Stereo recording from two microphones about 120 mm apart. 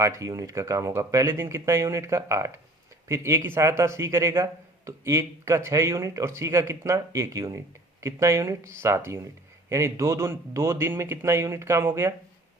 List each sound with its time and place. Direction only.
0.0 s speech: 25° right (ahead or behind)